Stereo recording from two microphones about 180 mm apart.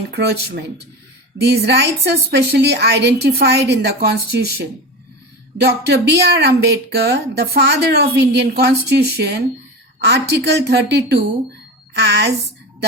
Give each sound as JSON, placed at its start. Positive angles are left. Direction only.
{"t": 0.1, "sound": "a woman's voice", "side_deg": -65}